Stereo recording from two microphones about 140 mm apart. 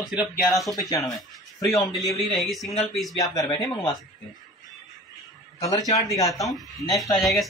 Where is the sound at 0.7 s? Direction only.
25° left (ahead or behind).